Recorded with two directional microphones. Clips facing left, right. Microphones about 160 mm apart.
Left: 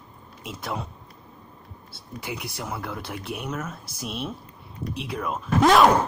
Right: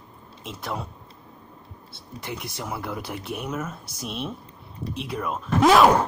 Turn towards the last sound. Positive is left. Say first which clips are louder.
# right 1 dB
turn(degrees=0)  # may be behind; listen again after turning